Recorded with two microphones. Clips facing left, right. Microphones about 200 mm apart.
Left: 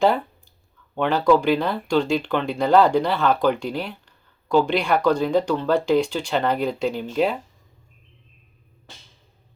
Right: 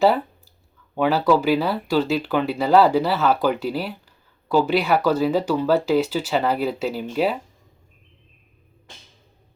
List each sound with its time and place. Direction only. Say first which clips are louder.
0.9 s speech: even; 5° right (ahead or behind)